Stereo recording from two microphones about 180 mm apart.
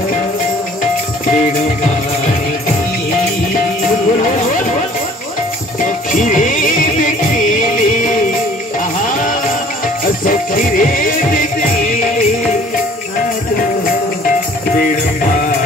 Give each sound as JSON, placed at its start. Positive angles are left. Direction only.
{"t": 4.2, "sound": "music", "side_deg": 45}
{"t": 6.1, "sound": "music", "side_deg": 45}
{"t": 10.0, "sound": "music", "side_deg": 50}